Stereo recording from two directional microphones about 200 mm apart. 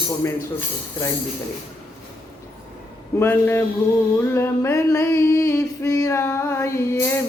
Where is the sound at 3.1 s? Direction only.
10° left (ahead or behind).